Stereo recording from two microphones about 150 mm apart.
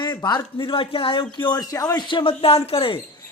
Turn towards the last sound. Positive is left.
turn(degrees=35)  # may be behind; listen again after turning